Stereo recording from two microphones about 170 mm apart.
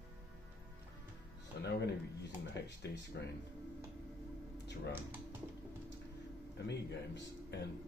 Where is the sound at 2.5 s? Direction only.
85° left.